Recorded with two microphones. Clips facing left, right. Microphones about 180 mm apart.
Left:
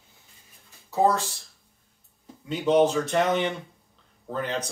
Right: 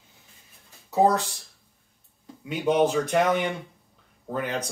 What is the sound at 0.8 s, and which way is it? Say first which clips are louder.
Speech: right 2 dB; 20° right (ahead or behind).